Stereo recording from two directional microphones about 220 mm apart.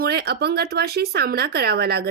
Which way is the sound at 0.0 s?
45° right (ahead or behind).